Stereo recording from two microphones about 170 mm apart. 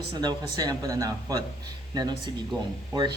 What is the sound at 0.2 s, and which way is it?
Speech, 25° right (ahead or behind).